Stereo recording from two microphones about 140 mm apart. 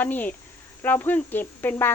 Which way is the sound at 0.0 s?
10° left (ahead or behind).